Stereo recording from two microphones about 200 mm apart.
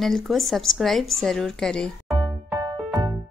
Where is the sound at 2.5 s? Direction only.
15° right (ahead or behind).